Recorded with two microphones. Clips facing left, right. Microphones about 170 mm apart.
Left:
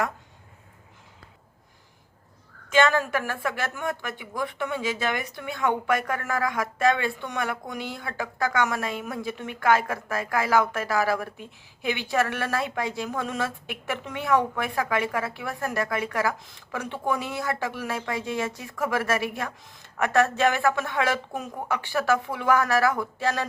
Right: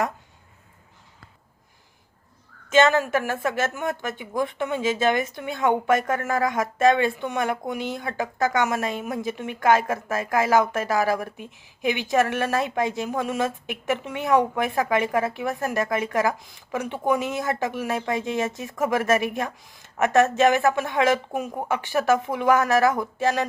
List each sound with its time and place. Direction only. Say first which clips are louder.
2.6 s speech: right 3 dB; 25° right (ahead or behind)